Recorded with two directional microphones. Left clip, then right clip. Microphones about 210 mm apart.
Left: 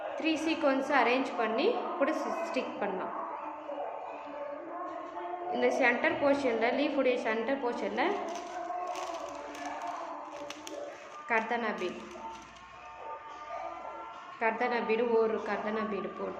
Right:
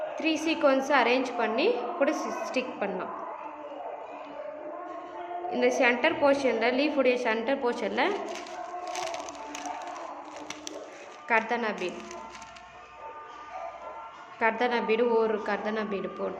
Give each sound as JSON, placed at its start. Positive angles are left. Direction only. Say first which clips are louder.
{"t": 0.2, "sound": "a woman's voice", "louder": "right 4 dB", "side_deg": -20}
{"t": 5.5, "sound": "a woman's voice", "louder": "right 3 dB", "side_deg": -20}
{"t": 11.3, "sound": "a woman's voice", "louder": "right 4 dB", "side_deg": -20}
{"t": 14.3, "sound": "a woman's voice", "louder": "right 4 dB", "side_deg": -25}